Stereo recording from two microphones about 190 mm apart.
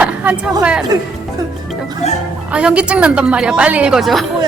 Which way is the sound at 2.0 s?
35° left (ahead or behind).